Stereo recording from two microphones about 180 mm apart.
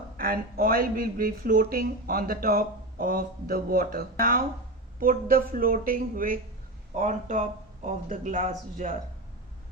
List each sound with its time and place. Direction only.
0.2 s speech: 55° right (ahead or behind)